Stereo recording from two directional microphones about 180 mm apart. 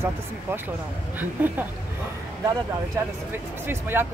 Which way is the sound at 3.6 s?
10° right (ahead or behind).